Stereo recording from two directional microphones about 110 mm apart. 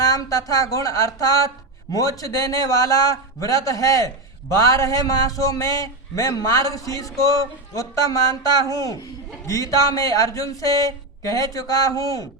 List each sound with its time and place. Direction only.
0.0 s a man's voice: 30° left (ahead or behind)